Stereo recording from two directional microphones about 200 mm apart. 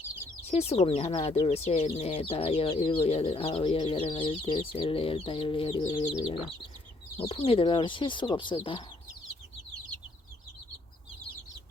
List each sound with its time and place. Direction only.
0.5 s speech: 30° left (ahead or behind)